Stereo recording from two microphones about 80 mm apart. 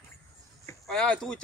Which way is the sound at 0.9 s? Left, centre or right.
Centre.